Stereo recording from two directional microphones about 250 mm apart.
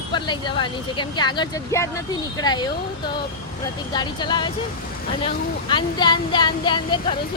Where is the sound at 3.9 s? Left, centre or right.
Centre.